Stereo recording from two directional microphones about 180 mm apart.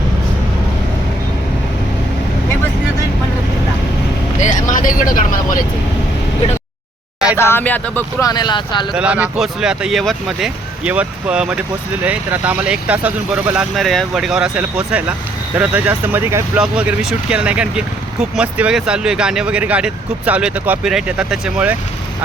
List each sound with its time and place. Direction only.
4.4 s speech: 45° left (ahead or behind)
7.3 s speech: 15° left (ahead or behind)
8.3 s speech: 25° left (ahead or behind)
8.9 s speech: 5° right (ahead or behind)